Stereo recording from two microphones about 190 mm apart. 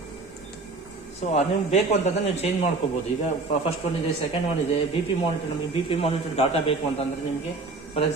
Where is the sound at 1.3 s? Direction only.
35° left (ahead or behind).